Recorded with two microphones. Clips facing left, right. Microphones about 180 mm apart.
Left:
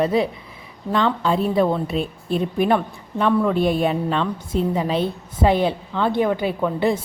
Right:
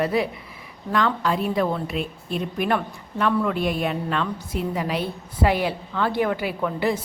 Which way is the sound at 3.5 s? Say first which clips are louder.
Left 5 dB; centre (ahead or behind).